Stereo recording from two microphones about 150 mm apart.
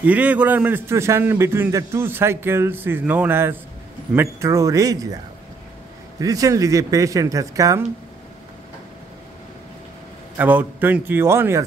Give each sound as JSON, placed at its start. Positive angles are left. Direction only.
{"t": 0.0, "sound": "a man's voice", "side_deg": -10}
{"t": 10.3, "sound": "a man's voice", "side_deg": -10}